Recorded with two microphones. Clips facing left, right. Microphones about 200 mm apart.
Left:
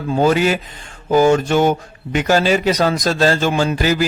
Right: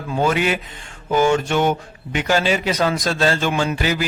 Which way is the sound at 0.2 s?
35° left (ahead or behind).